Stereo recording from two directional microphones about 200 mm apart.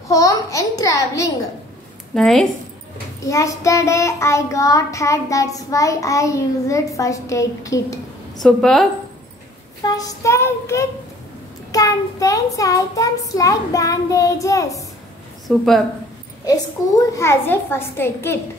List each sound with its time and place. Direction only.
0.1 s child singing: 15° left (ahead or behind)
2.1 s a woman's voice: centre (ahead or behind)
3.3 s child singing: 15° left (ahead or behind)
8.4 s a woman's voice: centre (ahead or behind)
9.8 s child singing: 20° left (ahead or behind)
15.4 s a woman's voice: centre (ahead or behind)
17.1 s child singing: 15° left (ahead or behind)